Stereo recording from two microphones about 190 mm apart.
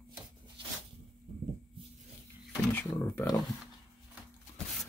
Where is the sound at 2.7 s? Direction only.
10° left (ahead or behind).